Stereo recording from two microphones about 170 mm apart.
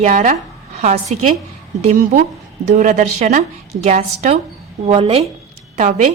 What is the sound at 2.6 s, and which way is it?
A woman's voice, 45° right (ahead or behind).